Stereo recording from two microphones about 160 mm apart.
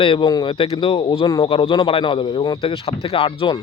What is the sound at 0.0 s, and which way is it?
A man's voice, 30° left (ahead or behind).